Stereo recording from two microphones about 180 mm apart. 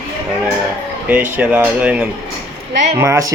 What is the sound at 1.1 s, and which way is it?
Speech, 10° right (ahead or behind).